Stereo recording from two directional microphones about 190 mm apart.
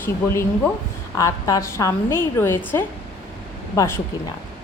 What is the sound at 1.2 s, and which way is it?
A woman's voice, 20° left (ahead or behind).